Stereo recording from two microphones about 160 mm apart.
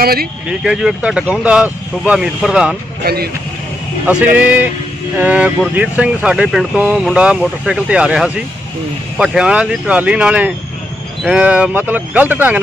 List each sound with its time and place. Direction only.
0.0 s speech: 75° right (ahead or behind)
0.5 s speech: 5° right (ahead or behind)
3.0 s speech: 75° right (ahead or behind)
4.4 s speech: 10° right (ahead or behind)